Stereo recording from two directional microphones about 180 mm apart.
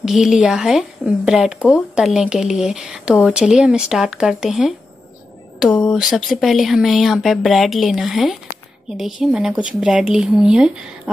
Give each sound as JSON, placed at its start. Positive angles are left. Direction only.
{"t": 0.0, "sound": "speech", "side_deg": 0}